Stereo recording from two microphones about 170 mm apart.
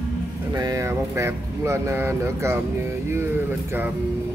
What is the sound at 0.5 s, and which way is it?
Speech, 20° right (ahead or behind).